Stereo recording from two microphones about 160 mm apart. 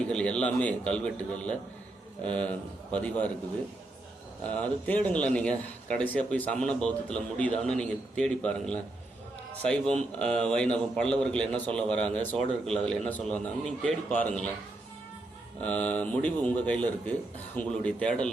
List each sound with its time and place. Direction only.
0.0 s a man's voice: 5° left (ahead or behind)
4.4 s a man's voice: 10° left (ahead or behind)
15.6 s a man's voice: 10° left (ahead or behind)